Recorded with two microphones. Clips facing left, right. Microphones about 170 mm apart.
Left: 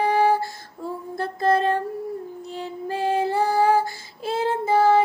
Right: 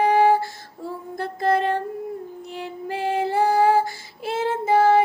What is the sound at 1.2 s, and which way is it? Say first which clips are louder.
Music: left 1 dB; 15° right (ahead or behind).